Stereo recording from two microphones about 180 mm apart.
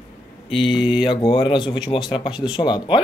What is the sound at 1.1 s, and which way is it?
Speech, 30° left (ahead or behind).